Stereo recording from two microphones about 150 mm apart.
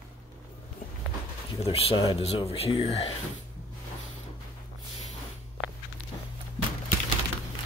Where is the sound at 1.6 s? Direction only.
40° left (ahead or behind).